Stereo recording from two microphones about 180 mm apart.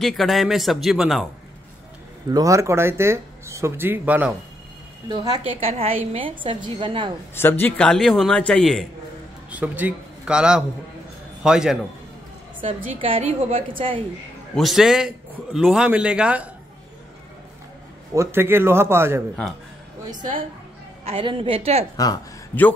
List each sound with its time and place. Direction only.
0.0 s a man's voice: centre (ahead or behind)
2.3 s speech: 15° right (ahead or behind)
5.0 s a woman's voice: 25° right (ahead or behind)
7.3 s a man's voice: 10° left (ahead or behind)
9.5 s a man's voice: 10° right (ahead or behind)
12.5 s a woman's voice: 30° right (ahead or behind)
14.5 s a man's voice: centre (ahead or behind)
18.1 s speech: 15° right (ahead or behind)
21.0 s a woman's voice: 30° right (ahead or behind)
21.9 s speech: 20° left (ahead or behind)